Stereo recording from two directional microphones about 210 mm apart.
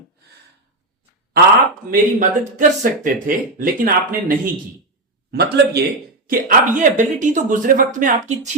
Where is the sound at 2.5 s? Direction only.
40° right (ahead or behind).